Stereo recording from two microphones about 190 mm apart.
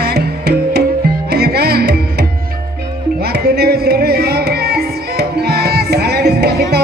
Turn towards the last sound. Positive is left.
turn(degrees=-60)  # may be behind; listen again after turning